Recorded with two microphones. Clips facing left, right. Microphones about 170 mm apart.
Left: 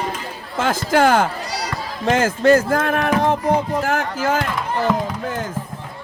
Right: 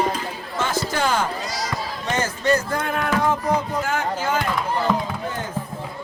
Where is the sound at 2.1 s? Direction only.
90° left.